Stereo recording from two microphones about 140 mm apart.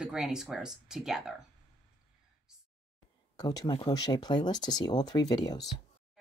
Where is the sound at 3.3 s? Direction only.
25° left (ahead or behind).